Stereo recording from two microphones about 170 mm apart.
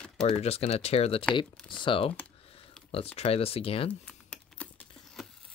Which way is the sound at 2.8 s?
5° left (ahead or behind).